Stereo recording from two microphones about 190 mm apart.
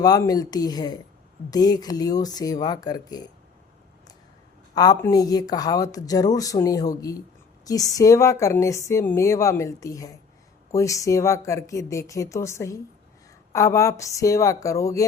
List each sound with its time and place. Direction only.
0.0 s speech: 20° left (ahead or behind)
4.7 s speech: 20° left (ahead or behind)